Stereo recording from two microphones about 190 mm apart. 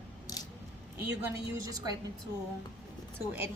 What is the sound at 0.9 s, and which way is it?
A woman's voice, 15° right (ahead or behind).